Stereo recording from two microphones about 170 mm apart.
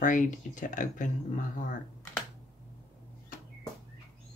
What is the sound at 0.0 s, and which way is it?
Speech, 50° left (ahead or behind).